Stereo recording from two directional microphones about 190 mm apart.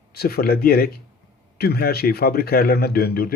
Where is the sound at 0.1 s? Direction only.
55° left (ahead or behind).